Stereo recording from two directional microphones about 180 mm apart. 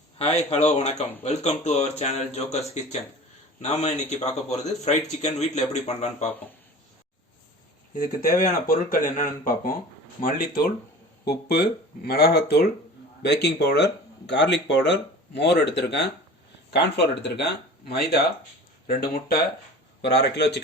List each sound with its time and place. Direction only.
0.2 s speech: 35° left (ahead or behind)
7.9 s speech: 45° left (ahead or behind); by 20.6 s 70° left (ahead or behind)